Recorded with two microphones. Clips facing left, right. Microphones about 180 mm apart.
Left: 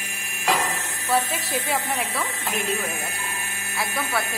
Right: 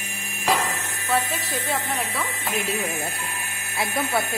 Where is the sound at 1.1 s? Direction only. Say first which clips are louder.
Left 1 dB; 5° left (ahead or behind).